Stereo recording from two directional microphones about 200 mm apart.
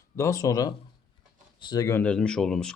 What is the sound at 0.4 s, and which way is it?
Speech, 15° left (ahead or behind).